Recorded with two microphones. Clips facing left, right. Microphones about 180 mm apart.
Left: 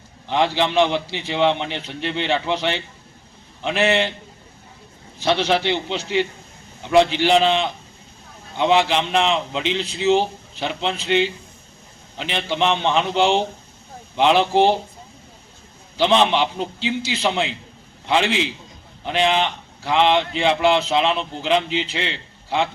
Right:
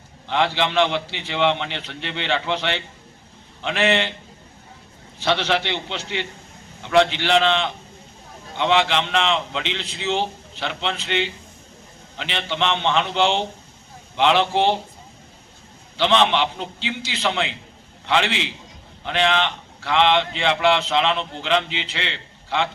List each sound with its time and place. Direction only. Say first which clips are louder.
0.3 s a man's voice: left 2 dB; 15° left (ahead or behind)
2.0 s a man's voice: left 7 dB; 20° right (ahead or behind)
2.2 s a man's voice: left 1 dB; 15° left (ahead or behind)
5.2 s a man's voice: left 2 dB; 15° left (ahead or behind)
6.8 s a man's voice: left 2 dB; 15° left (ahead or behind)
16.0 s a man's voice: left 2 dB; 15° left (ahead or behind)
18.3 s a man's voice: left 5 dB; 20° right (ahead or behind)
19.0 s a man's voice: left 2 dB; 15° left (ahead or behind)